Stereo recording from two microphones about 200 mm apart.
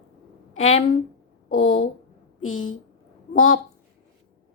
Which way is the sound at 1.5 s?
90° left.